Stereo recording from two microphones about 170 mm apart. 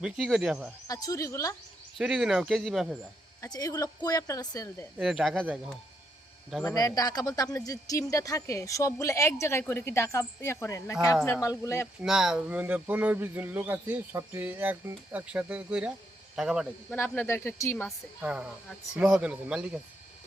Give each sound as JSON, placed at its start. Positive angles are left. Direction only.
{"t": 0.0, "sound": "speech", "side_deg": 0}
{"t": 0.9, "sound": "speech", "side_deg": 20}
{"t": 2.0, "sound": "speech", "side_deg": -5}
{"t": 3.4, "sound": "speech", "side_deg": 20}
{"t": 4.9, "sound": "speech", "side_deg": 0}
{"t": 6.5, "sound": "speech", "side_deg": 5}
{"t": 6.7, "sound": "speech", "side_deg": 20}
{"t": 12.0, "sound": "speech", "side_deg": -5}
{"t": 16.9, "sound": "speech", "side_deg": 15}
{"t": 17.8, "sound": "speech", "side_deg": -5}